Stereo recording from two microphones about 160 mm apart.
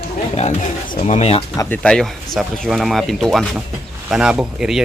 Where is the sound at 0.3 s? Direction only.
45° left (ahead or behind).